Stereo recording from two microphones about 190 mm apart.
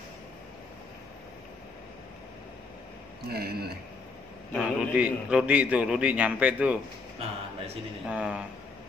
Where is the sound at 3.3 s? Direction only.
55° right (ahead or behind).